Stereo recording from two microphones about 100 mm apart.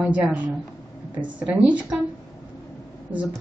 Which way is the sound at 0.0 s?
15° right (ahead or behind).